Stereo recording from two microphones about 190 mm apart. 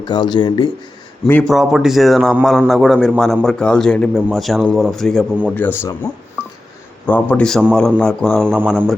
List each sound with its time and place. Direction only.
0.0 s speech: 25° left (ahead or behind)
1.2 s a man's voice: 5° left (ahead or behind)
7.1 s a man's voice: 5° left (ahead or behind)